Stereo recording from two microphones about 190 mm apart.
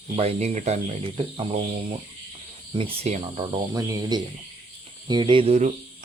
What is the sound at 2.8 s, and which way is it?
Speech, 30° right (ahead or behind).